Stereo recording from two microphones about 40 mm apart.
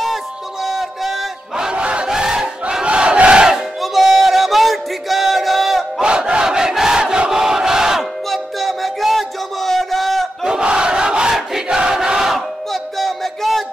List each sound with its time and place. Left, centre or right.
0.7 s a sound: centre
1.6 s battle cry: right
2.0 s battle cry: centre
2.7 s crowd: right
3.8 s a sound: centre
5.9 s battle cry: right
7.0 s crowd: centre
8.3 s music: centre
10.4 s crowd: right
11.3 s a sound: centre
11.8 s crowd: centre
12.9 s a sound: centre